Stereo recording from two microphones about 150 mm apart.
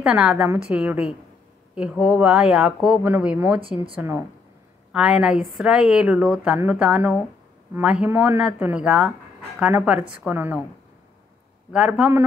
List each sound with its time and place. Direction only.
0.0 s a woman's voice: 5° right (ahead or behind)
11.7 s a woman's voice: 5° right (ahead or behind)